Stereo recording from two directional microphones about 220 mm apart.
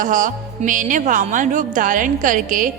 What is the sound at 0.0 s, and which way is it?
A woman's voice, 35° right (ahead or behind).